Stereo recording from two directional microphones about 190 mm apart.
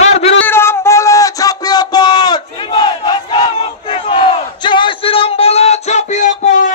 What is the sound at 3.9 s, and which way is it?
Battle cry, 30° left (ahead or behind).